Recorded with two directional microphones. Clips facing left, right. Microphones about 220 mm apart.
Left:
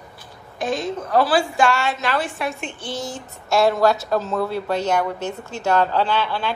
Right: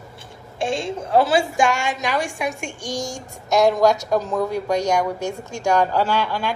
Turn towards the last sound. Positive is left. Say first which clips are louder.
# even
turn(degrees=-10)  # may be behind; listen again after turning